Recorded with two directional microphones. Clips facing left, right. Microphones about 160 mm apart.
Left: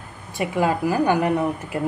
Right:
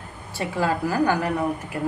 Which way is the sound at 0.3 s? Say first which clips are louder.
Left 3 dB; 15° left (ahead or behind).